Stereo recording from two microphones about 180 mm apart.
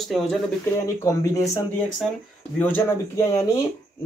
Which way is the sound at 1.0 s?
15° left (ahead or behind).